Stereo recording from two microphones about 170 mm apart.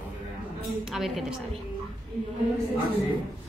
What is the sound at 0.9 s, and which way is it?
Speech, centre (ahead or behind).